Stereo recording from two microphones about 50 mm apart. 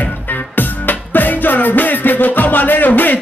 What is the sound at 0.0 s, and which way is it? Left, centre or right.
Music, left.